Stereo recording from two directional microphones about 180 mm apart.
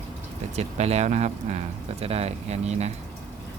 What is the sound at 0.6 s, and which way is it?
Speech, 35° right (ahead or behind).